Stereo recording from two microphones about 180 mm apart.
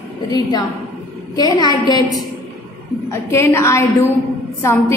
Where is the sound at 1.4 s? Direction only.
20° left (ahead or behind).